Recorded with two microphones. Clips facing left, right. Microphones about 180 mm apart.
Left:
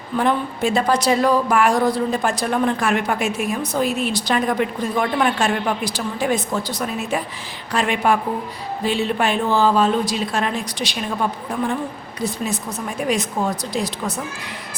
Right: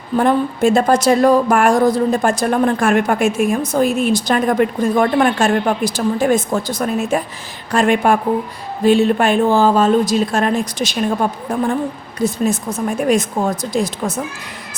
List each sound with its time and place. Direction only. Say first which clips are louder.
0.2 s a woman's voice: right 5 dB; 45° right (ahead or behind)